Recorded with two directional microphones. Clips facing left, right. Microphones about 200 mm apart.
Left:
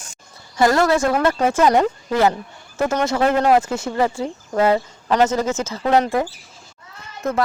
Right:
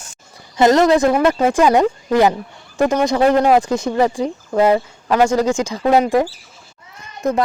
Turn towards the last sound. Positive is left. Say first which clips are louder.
# right 4 dB
turn(degrees=-15)  # may be behind; listen again after turning